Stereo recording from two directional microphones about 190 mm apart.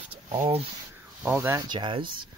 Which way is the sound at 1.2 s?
10° right (ahead or behind).